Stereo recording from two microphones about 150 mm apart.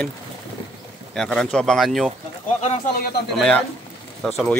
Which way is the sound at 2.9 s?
90° left.